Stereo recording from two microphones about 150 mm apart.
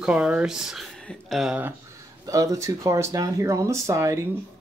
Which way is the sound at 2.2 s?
20° right (ahead or behind).